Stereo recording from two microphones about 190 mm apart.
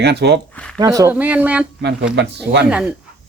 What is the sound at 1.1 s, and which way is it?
Speech, 10° right (ahead or behind).